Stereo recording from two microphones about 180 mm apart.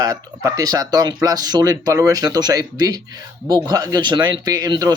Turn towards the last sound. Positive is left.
turn(degrees=-20)  # may be behind; listen again after turning